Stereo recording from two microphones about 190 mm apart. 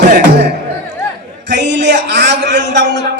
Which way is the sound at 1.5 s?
65° right (ahead or behind).